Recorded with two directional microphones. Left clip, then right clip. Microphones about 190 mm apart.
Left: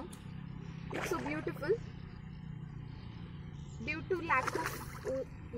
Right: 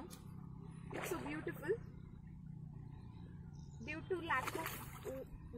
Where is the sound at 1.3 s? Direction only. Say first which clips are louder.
Left 6 dB; 20° right (ahead or behind).